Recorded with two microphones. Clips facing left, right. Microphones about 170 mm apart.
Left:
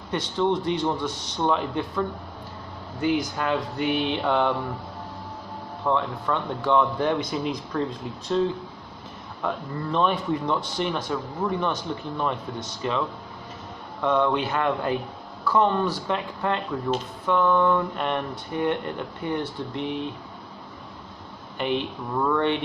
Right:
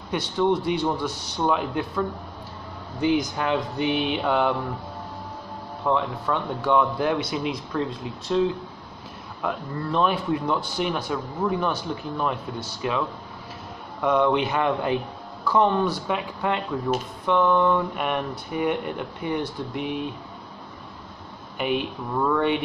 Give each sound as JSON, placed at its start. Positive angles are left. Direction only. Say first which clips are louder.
{"t": 0.1, "sound": "speech", "louder": "right 1 dB", "side_deg": -10}
{"t": 3.3, "sound": "speech", "louder": "right 1 dB", "side_deg": -20}
{"t": 5.9, "sound": "a man's voice", "louder": "right 1 dB", "side_deg": -5}
{"t": 9.4, "sound": "a man's voice", "louder": "right 1 dB", "side_deg": -5}
{"t": 14.0, "sound": "speech", "louder": "right 2 dB", "side_deg": -15}
{"t": 21.5, "sound": "speech", "louder": "right 1 dB", "side_deg": -10}